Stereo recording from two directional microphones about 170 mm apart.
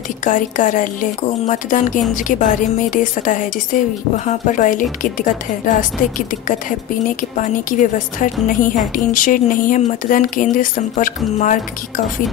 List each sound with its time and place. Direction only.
0.2 s a woman's voice: 50° left (ahead or behind)